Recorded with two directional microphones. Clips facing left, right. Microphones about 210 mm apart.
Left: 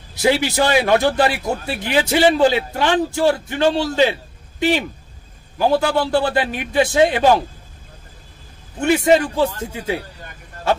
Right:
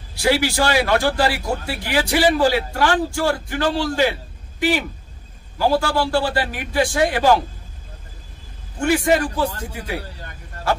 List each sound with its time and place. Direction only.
0.1 s a man's voice: 20° left (ahead or behind)
8.7 s a man's voice: 20° left (ahead or behind)